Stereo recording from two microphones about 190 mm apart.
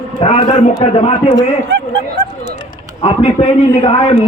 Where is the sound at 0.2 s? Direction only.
35° left (ahead or behind).